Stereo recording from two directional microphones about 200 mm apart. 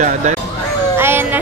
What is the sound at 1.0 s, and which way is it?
Music, 10° right (ahead or behind).